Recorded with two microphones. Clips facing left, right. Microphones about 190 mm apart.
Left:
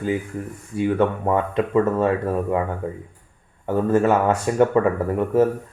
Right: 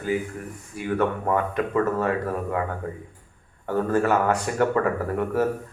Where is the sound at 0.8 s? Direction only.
25° left (ahead or behind).